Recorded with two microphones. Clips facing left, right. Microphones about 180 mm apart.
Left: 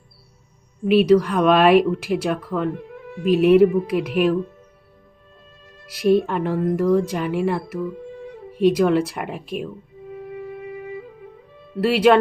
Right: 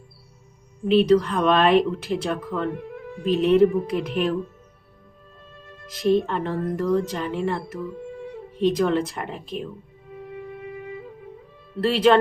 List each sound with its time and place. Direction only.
0.9 s speech: 10° left (ahead or behind)
6.1 s speech: 10° left (ahead or behind)
11.8 s speech: 10° left (ahead or behind)